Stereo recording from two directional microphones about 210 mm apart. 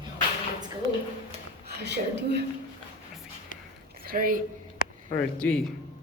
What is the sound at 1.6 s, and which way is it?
Speech, 55° right (ahead or behind).